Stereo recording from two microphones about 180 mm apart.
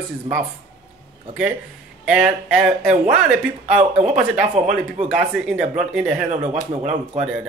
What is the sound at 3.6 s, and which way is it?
Speech, 40° right (ahead or behind).